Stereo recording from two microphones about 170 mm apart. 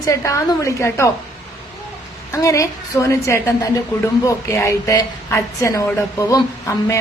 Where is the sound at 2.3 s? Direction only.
20° left (ahead or behind).